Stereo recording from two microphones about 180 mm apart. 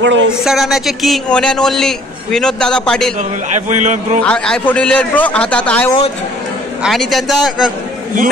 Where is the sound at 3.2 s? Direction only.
45° right (ahead or behind).